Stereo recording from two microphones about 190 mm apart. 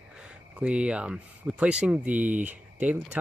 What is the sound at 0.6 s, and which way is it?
Speech, 5° right (ahead or behind).